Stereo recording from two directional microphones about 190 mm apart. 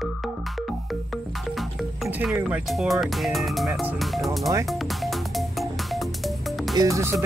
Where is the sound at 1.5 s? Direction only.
Centre (ahead or behind).